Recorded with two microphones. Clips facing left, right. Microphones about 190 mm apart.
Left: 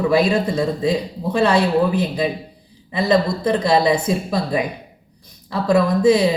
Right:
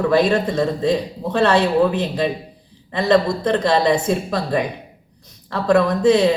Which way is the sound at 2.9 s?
5° left (ahead or behind).